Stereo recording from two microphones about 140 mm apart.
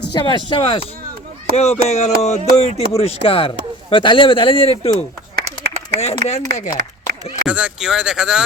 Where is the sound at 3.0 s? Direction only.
40° left (ahead or behind).